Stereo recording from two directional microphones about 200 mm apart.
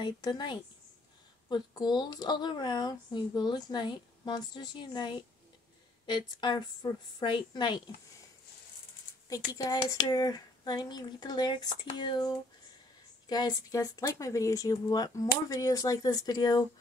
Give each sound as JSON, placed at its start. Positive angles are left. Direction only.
{"t": 0.0, "sound": "speech", "side_deg": 20}
{"t": 9.3, "sound": "speech", "side_deg": 20}